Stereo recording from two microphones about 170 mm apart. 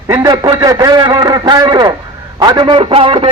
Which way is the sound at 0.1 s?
20° right (ahead or behind).